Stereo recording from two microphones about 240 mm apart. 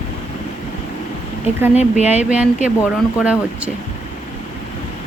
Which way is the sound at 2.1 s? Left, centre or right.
Centre.